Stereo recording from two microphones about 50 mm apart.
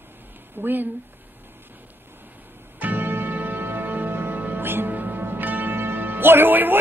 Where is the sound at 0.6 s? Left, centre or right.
Right.